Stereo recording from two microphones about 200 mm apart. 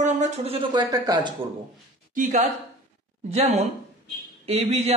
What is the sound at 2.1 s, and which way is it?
A woman's voice, 40° right (ahead or behind).